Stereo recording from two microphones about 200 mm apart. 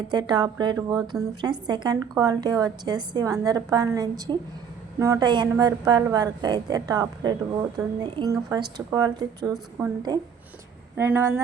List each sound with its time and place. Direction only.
0.1 s a woman's voice: 20° right (ahead or behind)